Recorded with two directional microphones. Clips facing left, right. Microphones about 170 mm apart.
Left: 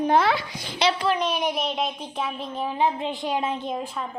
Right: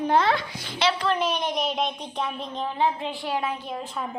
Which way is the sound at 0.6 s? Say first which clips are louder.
Left 1 dB; 15° left (ahead or behind).